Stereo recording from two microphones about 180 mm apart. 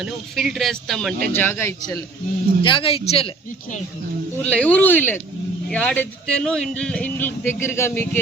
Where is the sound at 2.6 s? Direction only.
30° left (ahead or behind).